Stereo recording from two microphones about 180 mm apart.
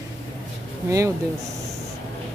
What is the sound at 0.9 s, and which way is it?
Speech, 15° right (ahead or behind).